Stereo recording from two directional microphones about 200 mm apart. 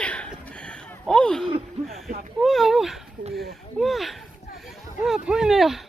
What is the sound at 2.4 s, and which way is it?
Speech, centre (ahead or behind).